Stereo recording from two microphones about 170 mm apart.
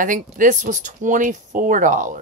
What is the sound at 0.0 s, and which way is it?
Speech, 50° right (ahead or behind).